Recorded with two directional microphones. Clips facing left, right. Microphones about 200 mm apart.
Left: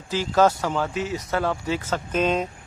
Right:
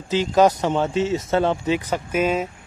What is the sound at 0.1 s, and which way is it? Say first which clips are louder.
Speech: right 3 dB; 20° right (ahead or behind).